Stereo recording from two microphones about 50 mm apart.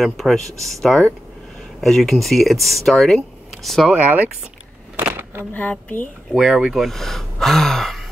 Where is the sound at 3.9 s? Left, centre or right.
Right.